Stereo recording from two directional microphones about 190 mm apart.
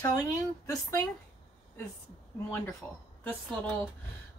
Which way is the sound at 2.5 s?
10° left (ahead or behind).